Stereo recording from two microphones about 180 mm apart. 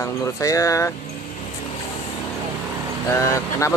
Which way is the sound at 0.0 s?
20° left (ahead or behind).